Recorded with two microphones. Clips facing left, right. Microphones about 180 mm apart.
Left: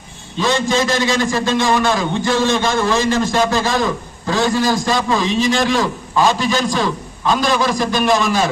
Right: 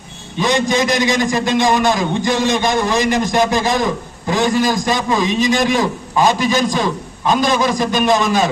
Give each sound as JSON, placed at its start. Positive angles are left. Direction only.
{"t": 0.3, "sound": "a man's voice", "side_deg": -15}